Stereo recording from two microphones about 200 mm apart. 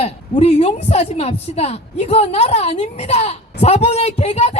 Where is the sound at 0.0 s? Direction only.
30° left (ahead or behind).